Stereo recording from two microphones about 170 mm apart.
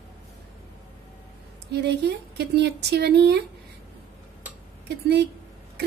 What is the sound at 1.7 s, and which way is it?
A woman's voice, 75° right (ahead or behind).